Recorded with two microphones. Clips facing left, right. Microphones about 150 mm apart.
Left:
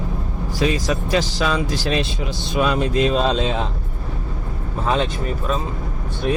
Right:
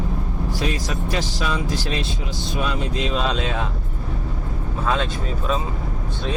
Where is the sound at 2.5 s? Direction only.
75° left (ahead or behind).